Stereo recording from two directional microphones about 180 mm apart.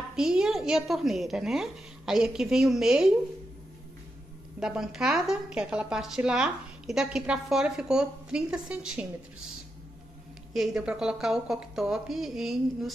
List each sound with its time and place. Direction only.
0.1 s a woman's voice: 5° right (ahead or behind)
4.6 s a woman's voice: 5° right (ahead or behind)
10.5 s a woman's voice: 5° right (ahead or behind)